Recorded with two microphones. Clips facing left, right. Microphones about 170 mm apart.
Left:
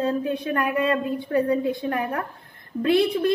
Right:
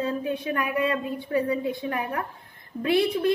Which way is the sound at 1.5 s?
45° left (ahead or behind).